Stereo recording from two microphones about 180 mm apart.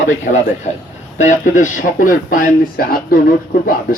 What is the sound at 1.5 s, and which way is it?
Speech, 45° left (ahead or behind).